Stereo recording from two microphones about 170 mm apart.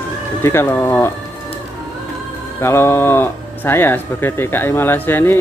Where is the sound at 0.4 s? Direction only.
15° left (ahead or behind).